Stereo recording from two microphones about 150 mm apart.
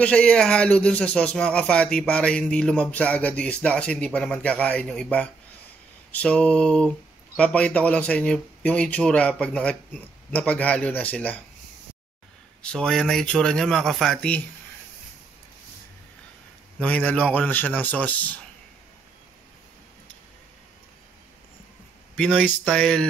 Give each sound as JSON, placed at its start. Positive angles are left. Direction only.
{"t": 0.0, "sound": "speech", "side_deg": 5}
{"t": 12.6, "sound": "speech", "side_deg": 5}
{"t": 16.8, "sound": "speech", "side_deg": 10}
{"t": 22.1, "sound": "speech", "side_deg": 10}